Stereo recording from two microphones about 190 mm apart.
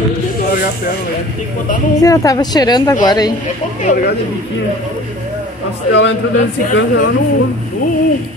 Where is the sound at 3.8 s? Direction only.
45° left (ahead or behind).